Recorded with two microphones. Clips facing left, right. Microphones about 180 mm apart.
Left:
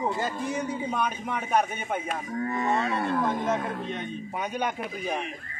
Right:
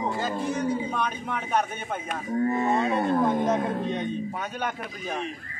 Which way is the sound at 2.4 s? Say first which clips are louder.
Right 4 dB; 25° right (ahead or behind).